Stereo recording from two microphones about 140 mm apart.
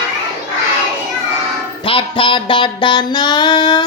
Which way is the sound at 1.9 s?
40° left (ahead or behind).